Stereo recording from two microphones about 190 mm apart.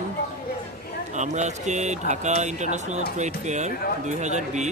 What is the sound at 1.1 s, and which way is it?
Speech, 40° right (ahead or behind).